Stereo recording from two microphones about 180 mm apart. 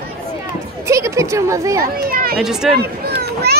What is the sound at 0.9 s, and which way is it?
Speech, 15° right (ahead or behind).